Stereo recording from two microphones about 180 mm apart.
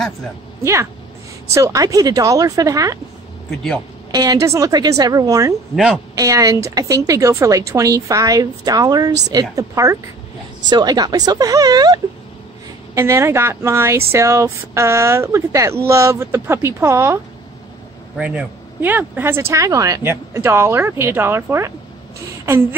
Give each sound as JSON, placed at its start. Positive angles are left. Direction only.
{"t": 1.5, "sound": "a woman's voice", "side_deg": -15}
{"t": 4.1, "sound": "a woman's voice", "side_deg": -20}